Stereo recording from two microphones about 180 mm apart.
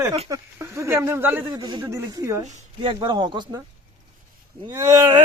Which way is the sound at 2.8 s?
30° right (ahead or behind).